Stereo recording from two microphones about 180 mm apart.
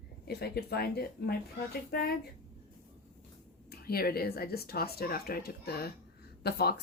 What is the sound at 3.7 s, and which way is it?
Speech, 60° left (ahead or behind).